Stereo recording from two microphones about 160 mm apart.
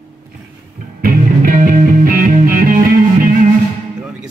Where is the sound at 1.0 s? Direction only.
60° right (ahead or behind).